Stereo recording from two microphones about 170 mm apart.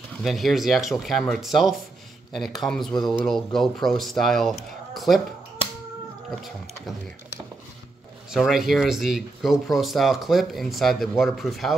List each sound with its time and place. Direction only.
0.2 s speech: centre (ahead or behind)
8.3 s speech: centre (ahead or behind)